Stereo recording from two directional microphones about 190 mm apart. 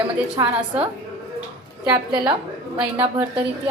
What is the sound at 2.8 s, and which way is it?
Speech, 10° right (ahead or behind).